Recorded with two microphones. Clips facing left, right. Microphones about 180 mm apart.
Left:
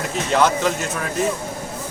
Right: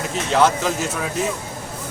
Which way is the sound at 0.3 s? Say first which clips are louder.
Right 1 dB; centre (ahead or behind).